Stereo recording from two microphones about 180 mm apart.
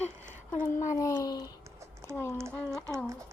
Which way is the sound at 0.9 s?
20° left (ahead or behind).